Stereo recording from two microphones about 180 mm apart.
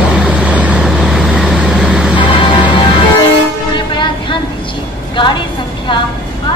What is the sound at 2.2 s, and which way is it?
Music, 25° left (ahead or behind).